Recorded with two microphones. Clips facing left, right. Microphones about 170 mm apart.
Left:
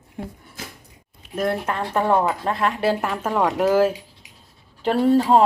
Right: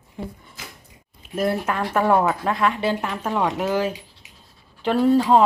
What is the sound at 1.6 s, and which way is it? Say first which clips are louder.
Speech: right 1 dB; 25° left (ahead or behind).